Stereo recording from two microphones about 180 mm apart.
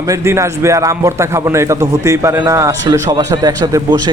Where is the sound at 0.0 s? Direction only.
15° right (ahead or behind).